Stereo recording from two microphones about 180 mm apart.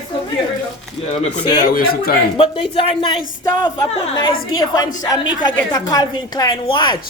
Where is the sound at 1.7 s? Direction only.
55° left (ahead or behind).